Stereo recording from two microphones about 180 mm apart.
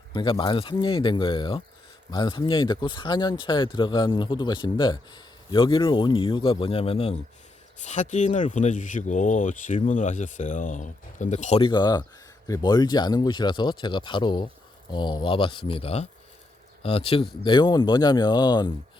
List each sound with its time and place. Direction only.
0.1 s speech: 30° left (ahead or behind)
11.6 s speech: 25° left (ahead or behind)